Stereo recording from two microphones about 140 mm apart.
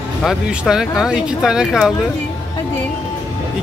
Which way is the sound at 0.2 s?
5° right (ahead or behind).